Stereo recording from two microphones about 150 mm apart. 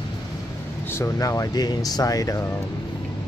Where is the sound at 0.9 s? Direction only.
20° left (ahead or behind).